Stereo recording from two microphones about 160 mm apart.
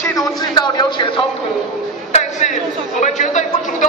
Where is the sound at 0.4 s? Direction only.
25° left (ahead or behind).